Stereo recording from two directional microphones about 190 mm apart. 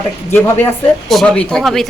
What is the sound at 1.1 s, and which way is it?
Speech, 5° left (ahead or behind).